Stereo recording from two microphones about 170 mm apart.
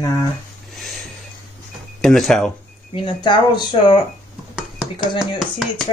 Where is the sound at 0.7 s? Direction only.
Centre (ahead or behind).